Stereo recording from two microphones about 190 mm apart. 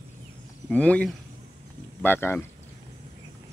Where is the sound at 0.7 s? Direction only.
5° left (ahead or behind).